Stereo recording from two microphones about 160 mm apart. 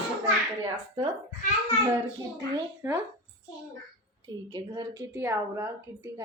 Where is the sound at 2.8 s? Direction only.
20° right (ahead or behind).